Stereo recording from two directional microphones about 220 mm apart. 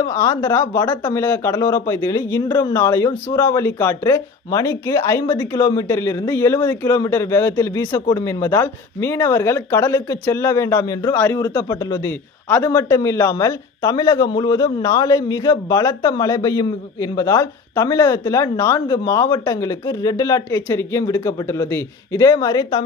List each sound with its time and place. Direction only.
0.0 s speech: 15° left (ahead or behind)